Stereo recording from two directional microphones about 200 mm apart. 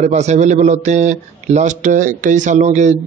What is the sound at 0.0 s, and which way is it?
Speech, 35° right (ahead or behind).